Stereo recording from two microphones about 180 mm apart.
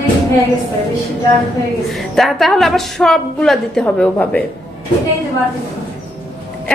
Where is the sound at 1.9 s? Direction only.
Centre (ahead or behind).